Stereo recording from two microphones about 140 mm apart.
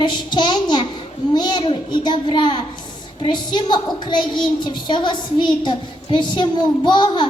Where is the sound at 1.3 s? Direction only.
30° left (ahead or behind).